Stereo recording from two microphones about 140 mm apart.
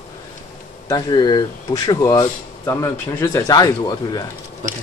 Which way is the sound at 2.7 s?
20° left (ahead or behind).